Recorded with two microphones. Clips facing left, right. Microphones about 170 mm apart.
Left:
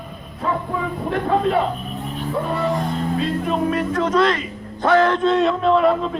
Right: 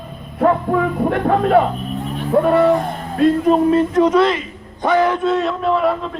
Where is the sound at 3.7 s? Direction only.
25° right (ahead or behind).